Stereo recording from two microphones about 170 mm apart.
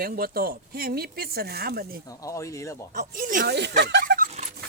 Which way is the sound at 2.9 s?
55° right (ahead or behind).